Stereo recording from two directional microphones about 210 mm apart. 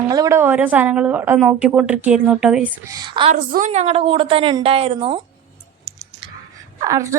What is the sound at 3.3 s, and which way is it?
A woman's voice, 40° right (ahead or behind).